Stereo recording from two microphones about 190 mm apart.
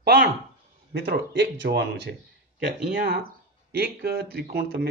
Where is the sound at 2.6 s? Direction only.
50° right (ahead or behind).